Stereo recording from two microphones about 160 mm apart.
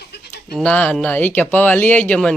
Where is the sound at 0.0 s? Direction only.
90° left.